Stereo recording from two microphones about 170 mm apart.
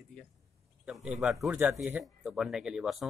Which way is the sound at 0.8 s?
5° right (ahead or behind).